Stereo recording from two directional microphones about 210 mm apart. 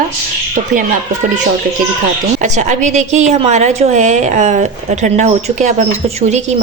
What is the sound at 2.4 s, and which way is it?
A woman's voice, 35° right (ahead or behind).